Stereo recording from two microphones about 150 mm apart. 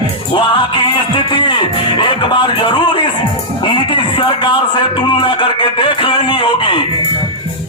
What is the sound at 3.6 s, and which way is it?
A man's voice, 35° left (ahead or behind).